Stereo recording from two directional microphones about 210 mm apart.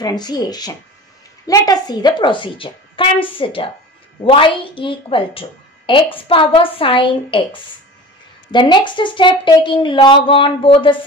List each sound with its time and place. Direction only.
0.0 s a woman's voice: 20° left (ahead or behind)
8.5 s a woman's voice: 20° left (ahead or behind)